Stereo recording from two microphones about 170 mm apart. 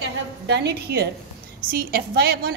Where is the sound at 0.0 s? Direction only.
80° right.